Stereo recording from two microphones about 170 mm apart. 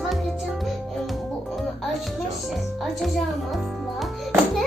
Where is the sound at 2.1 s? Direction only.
Centre (ahead or behind).